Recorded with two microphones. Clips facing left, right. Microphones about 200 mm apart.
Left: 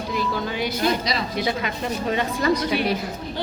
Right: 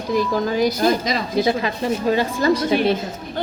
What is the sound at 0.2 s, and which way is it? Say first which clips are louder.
A woman's voice: right 7 dB; 40° right (ahead or behind).